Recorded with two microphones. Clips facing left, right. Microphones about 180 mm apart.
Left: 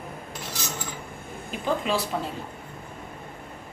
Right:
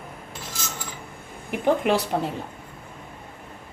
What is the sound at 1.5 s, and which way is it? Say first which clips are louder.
Speech: right 5 dB; 65° right (ahead or behind).